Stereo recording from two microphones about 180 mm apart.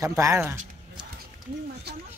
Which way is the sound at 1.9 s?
65° right (ahead or behind).